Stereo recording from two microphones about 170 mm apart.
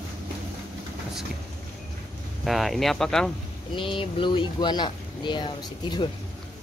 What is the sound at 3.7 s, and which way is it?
Speech, 30° left (ahead or behind).